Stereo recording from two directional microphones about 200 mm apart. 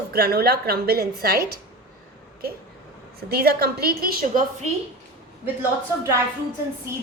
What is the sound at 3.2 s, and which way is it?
A woman's voice, 50° right (ahead or behind).